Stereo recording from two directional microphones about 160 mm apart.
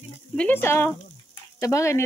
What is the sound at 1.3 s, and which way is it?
Frying, 20° left (ahead or behind).